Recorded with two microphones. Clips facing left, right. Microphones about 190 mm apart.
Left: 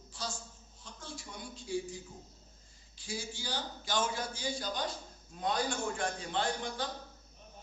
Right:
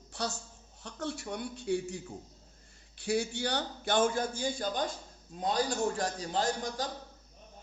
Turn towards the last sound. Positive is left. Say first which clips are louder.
# right 3 dB
turn(degrees=-40)  # may be behind; listen again after turning